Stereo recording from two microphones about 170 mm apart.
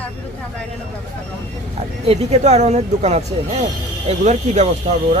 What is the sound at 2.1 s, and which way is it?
Speech, 40° right (ahead or behind).